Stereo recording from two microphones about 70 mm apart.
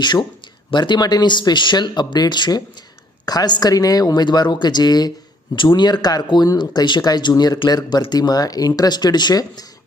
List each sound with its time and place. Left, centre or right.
0.0 s speech: left
0.8 s speech: left
5.6 s speech: left